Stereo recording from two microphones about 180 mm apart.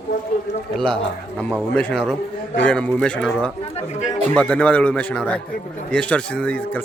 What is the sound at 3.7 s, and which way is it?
Speech, 40° left (ahead or behind).